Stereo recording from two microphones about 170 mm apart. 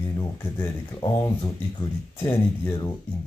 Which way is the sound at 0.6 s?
20° left (ahead or behind).